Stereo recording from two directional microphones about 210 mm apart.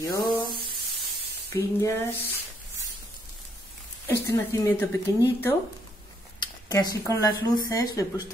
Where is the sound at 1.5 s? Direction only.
15° left (ahead or behind).